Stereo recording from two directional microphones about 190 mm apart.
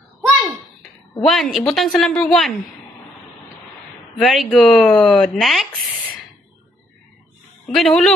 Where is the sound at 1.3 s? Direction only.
Centre (ahead or behind).